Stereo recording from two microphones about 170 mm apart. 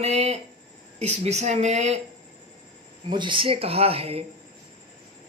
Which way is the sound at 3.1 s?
25° right (ahead or behind).